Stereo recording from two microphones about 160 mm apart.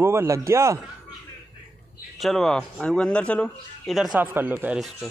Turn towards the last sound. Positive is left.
turn(degrees=-10)  # may be behind; listen again after turning